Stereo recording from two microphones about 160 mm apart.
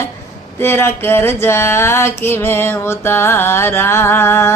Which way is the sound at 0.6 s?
15° left (ahead or behind).